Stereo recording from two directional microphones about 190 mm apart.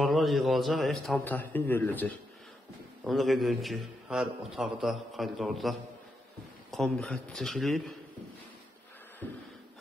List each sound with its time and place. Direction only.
0.0 s a man's voice: centre (ahead or behind)